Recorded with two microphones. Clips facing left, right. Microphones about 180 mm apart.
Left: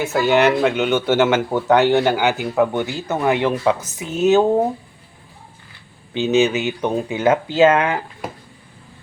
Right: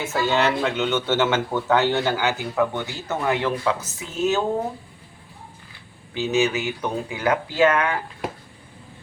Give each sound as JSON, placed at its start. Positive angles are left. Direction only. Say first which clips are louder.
{"t": 0.0, "sound": "speech", "louder": "left 6 dB", "side_deg": 10}
{"t": 6.1, "sound": "speech", "louder": "left 5 dB", "side_deg": 20}